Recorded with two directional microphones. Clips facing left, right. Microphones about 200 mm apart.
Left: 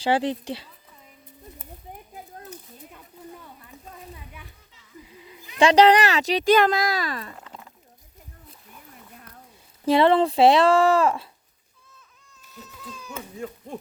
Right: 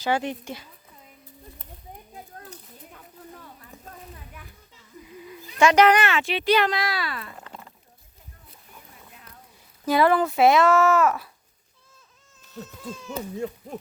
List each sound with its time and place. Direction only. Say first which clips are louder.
0.0 s a child's voice: left 3 dB; 30° left (ahead or behind)
5.5 s a child's voice: left 2 dB; 30° left (ahead or behind)
7.3 s a sound: right 1 dB; centre (ahead or behind)
9.8 s a child's voice: left 2 dB; 30° left (ahead or behind)
12.8 s speech: right 4 dB; 25° right (ahead or behind)
13.6 s a sound: even; 5° right (ahead or behind)